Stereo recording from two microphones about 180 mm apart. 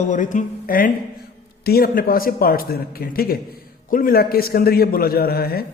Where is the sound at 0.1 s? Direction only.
45° left (ahead or behind).